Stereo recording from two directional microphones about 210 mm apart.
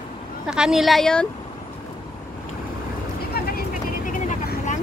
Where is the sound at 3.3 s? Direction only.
45° left (ahead or behind).